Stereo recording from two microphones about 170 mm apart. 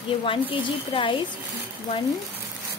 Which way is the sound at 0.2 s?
30° left (ahead or behind).